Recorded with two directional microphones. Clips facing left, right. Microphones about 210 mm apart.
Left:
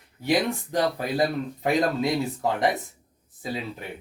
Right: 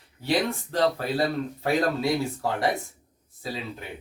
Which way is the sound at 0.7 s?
15° left (ahead or behind).